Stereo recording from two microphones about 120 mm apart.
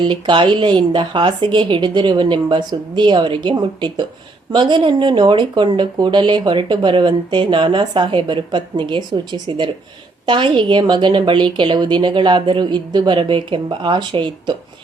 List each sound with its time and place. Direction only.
0.1 s speech: 40° right (ahead or behind)